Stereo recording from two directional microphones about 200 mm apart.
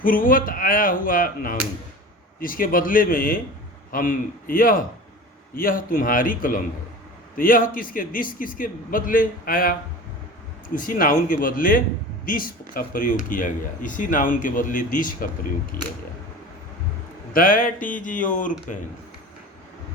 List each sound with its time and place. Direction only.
0.0 s speech: 45° left (ahead or behind)
10.8 s speech: 45° left (ahead or behind)
17.3 s speech: 45° left (ahead or behind)